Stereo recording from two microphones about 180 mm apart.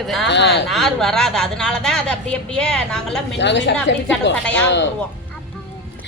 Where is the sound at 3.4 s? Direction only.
80° left.